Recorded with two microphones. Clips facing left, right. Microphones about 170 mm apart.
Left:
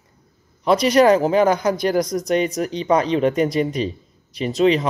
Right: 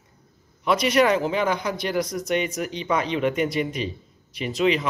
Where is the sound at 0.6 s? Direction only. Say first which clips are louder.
Left 5 dB; 35° left (ahead or behind).